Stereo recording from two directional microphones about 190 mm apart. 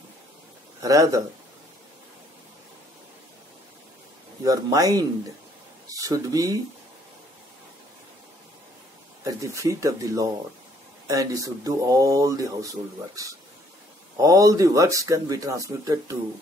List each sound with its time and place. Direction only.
0.8 s speech: 15° right (ahead or behind)
4.5 s speech: 20° right (ahead or behind)
9.2 s speech: 15° right (ahead or behind)